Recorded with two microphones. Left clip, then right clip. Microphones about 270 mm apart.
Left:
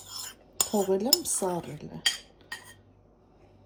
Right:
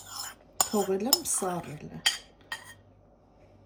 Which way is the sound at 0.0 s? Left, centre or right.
Centre.